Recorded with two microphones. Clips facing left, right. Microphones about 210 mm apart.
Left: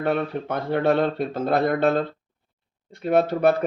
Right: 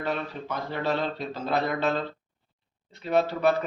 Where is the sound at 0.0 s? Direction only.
55° left (ahead or behind).